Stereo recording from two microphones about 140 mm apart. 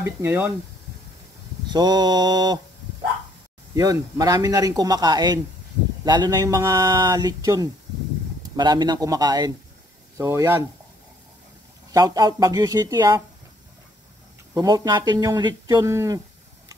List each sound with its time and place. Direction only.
0.0 s speech: 15° right (ahead or behind)
1.7 s mantra: 30° right (ahead or behind)
3.7 s speech: 25° right (ahead or behind)
11.9 s speech: 25° right (ahead or behind)
14.5 s speech: 25° right (ahead or behind)